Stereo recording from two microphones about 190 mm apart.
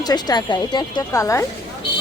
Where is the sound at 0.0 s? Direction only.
20° left (ahead or behind).